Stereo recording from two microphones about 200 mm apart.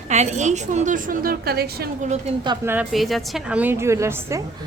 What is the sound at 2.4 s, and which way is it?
Speech, 20° right (ahead or behind).